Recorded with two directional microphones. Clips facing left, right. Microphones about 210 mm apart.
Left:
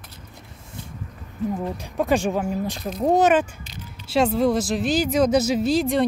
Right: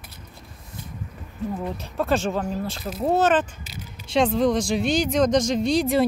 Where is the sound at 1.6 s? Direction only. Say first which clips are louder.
Left 2 dB; 15° left (ahead or behind).